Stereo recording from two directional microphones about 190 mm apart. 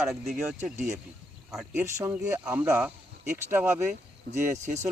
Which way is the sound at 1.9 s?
15° right (ahead or behind).